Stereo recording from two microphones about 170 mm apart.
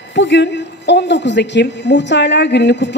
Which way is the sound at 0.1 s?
90° left.